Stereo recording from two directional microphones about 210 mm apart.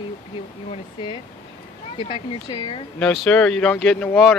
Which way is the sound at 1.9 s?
25° left (ahead or behind).